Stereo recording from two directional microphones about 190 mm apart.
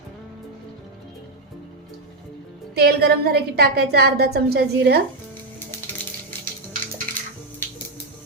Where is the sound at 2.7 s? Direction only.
55° right (ahead or behind).